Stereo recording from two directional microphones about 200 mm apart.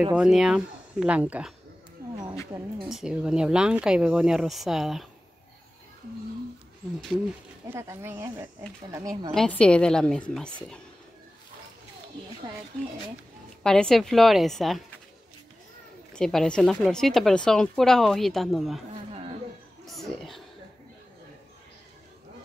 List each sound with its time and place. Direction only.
0.0 s speech: 5° right (ahead or behind)
2.0 s a sound: 50° right (ahead or behind)
2.8 s speech: centre (ahead or behind)
7.7 s speech: 10° right (ahead or behind)
9.3 s speech: 5° left (ahead or behind)
13.6 s speech: 5° left (ahead or behind)
16.1 s speech: centre (ahead or behind)
19.9 s a sound: centre (ahead or behind)